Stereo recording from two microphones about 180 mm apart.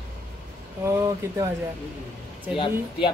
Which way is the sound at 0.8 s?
15° right (ahead or behind).